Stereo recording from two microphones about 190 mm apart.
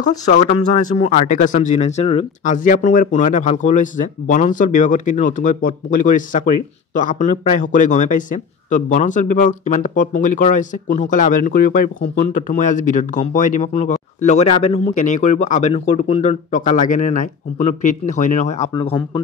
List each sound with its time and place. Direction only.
0.3 s speech: 40° left (ahead or behind)
18.7 s speech: 25° left (ahead or behind)